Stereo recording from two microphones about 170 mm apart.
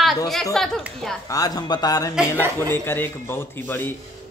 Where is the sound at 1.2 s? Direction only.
20° left (ahead or behind).